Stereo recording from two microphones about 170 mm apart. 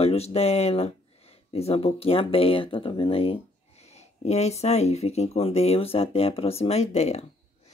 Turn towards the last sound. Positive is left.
turn(degrees=40)  # may be behind; listen again after turning